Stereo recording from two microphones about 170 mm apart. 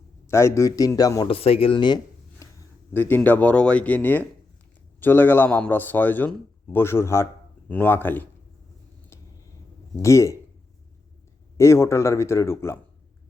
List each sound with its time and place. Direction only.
0.3 s a man's voice: 15° left (ahead or behind)
1.3 s speech: 35° left (ahead or behind)
2.4 s a man's voice: 15° left (ahead or behind)
10.0 s a man's voice: 15° left (ahead or behind)
11.5 s a man's voice: 15° left (ahead or behind)